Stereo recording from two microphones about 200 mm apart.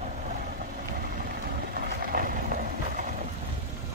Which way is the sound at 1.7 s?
50° right (ahead or behind).